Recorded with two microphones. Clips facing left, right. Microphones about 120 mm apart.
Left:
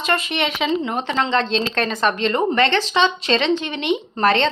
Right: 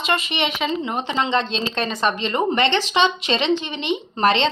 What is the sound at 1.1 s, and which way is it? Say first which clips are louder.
Speech: left 1 dB; 15° right (ahead or behind).